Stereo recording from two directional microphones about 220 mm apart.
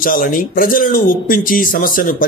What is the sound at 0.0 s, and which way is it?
Speech, 40° left (ahead or behind).